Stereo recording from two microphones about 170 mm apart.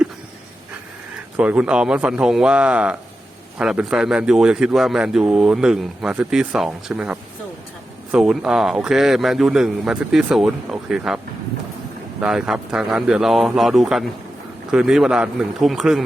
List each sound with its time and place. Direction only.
1.4 s a man's voice: 5° right (ahead or behind)
12.2 s a man's voice: 5° right (ahead or behind)